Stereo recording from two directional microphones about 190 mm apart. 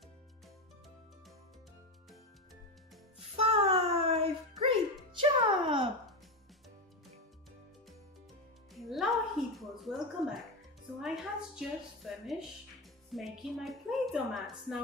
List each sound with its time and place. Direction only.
3.3 s child singing: 30° right (ahead or behind)
5.1 s music: 25° right (ahead or behind)
8.7 s a sound: centre (ahead or behind)
11.5 s a woman's voice: centre (ahead or behind)